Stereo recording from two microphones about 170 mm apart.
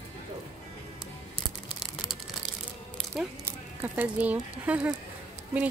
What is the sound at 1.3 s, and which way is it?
Crumpling, 5° right (ahead or behind).